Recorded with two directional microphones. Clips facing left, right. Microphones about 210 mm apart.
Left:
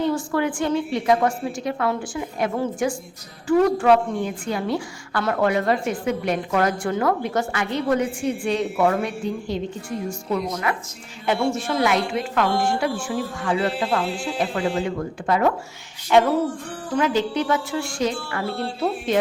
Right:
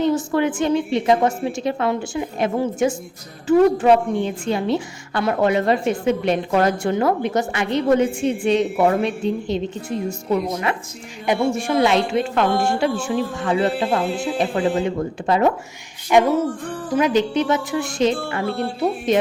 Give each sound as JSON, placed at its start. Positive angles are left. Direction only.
{"t": 0.0, "sound": "a woman's voice", "side_deg": -20}
{"t": 11.8, "sound": "a woman's voice", "side_deg": -25}
{"t": 16.1, "sound": "a woman's voice", "side_deg": -15}